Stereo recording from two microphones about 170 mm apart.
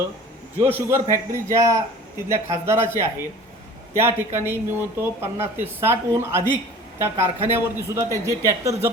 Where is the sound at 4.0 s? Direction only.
15° right (ahead or behind).